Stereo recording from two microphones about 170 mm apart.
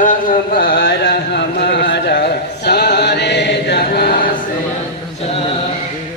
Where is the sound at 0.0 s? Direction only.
55° left (ahead or behind).